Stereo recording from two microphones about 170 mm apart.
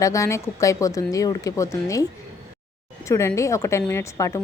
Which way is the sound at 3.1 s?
15° left (ahead or behind).